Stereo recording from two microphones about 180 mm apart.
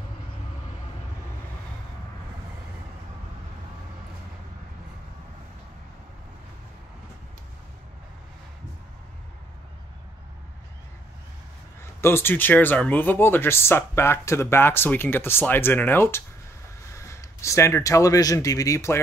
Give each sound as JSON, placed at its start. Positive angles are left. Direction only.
{"t": 12.0, "sound": "speech", "side_deg": 15}